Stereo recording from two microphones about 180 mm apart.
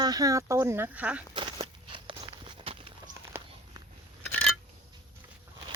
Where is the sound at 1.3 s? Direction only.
30° right (ahead or behind).